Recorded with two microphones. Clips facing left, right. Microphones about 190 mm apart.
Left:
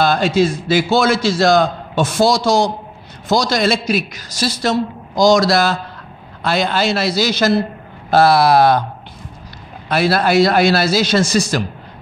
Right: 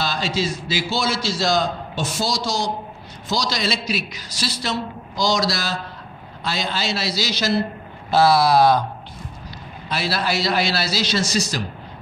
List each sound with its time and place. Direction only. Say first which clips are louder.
0.0 s a man's voice: left 9 dB; 55° left (ahead or behind)
9.8 s a man's voice: left 9 dB; 55° left (ahead or behind)